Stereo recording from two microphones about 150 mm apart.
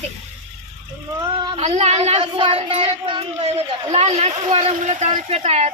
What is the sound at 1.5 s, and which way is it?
Speech, 45° right (ahead or behind).